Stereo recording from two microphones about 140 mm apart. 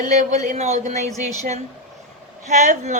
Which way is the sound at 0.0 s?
55° right (ahead or behind).